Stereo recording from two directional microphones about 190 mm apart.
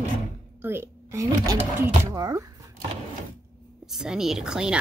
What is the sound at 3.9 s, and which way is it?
Speech, 5° right (ahead or behind).